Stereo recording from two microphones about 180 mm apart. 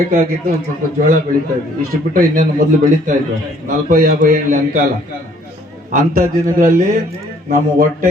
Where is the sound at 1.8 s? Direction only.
50° right (ahead or behind).